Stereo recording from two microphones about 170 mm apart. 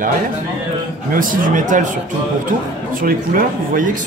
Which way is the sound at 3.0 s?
55° right (ahead or behind).